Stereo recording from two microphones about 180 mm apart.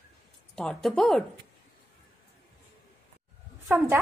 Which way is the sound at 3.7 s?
10° right (ahead or behind).